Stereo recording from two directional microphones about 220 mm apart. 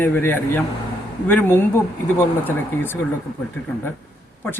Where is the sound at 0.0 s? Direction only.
10° left (ahead or behind).